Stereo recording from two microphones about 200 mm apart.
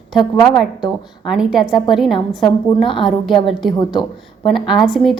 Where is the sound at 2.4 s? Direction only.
25° left (ahead or behind).